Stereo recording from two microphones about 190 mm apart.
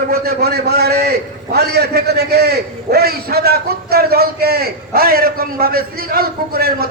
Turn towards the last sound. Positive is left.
turn(degrees=-50)  # may be behind; listen again after turning